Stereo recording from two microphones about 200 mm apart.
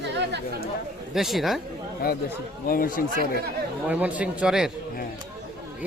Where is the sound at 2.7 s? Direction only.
45° left (ahead or behind).